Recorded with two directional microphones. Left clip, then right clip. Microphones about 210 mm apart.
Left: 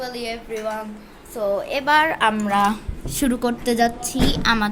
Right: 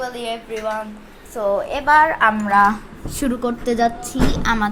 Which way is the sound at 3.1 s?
55° left (ahead or behind).